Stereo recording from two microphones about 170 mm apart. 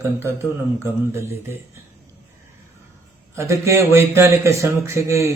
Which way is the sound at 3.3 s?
15° right (ahead or behind).